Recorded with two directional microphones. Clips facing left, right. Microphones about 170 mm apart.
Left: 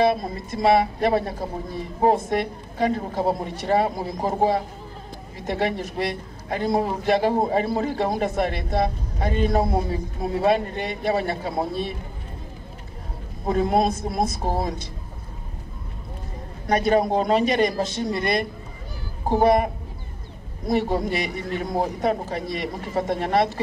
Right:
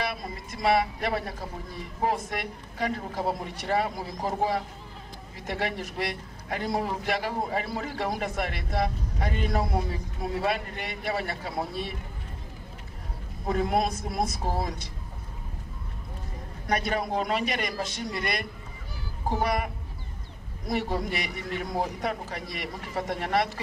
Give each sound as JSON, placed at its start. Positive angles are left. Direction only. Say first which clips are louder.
{"t": 0.0, "sound": "speech", "louder": "left 12 dB", "side_deg": 25}
{"t": 13.5, "sound": "speech", "louder": "left 5 dB", "side_deg": 25}
{"t": 16.6, "sound": "speech", "louder": "left 8 dB", "side_deg": 25}
{"t": 19.4, "sound": "speech", "louder": "left 13 dB", "side_deg": 25}